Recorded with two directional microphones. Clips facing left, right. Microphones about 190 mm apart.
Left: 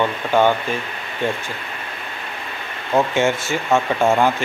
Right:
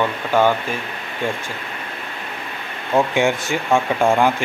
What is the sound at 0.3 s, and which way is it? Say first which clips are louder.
Speech: even; 10° right (ahead or behind).